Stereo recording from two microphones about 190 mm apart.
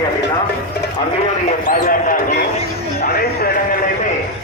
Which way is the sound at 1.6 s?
45° left (ahead or behind).